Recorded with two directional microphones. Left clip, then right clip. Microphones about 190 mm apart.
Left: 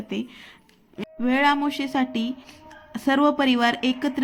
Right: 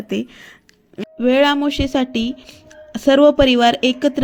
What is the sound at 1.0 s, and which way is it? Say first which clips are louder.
Speech: right 6 dB; 30° right (ahead or behind).